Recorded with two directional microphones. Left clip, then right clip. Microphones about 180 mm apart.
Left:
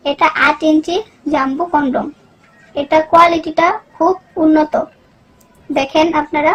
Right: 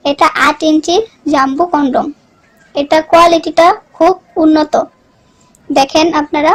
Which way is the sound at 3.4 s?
40° right (ahead or behind).